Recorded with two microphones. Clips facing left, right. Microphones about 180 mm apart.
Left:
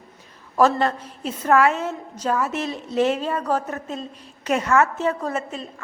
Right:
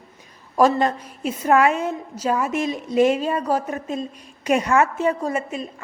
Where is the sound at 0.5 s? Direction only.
15° right (ahead or behind).